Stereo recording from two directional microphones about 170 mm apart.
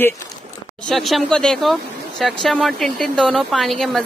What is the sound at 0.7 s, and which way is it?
A woman's voice, centre (ahead or behind).